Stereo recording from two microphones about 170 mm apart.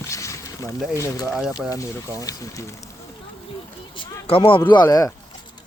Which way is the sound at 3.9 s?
30° left (ahead or behind).